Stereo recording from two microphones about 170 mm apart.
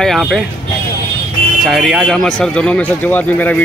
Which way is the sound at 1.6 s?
Centre (ahead or behind).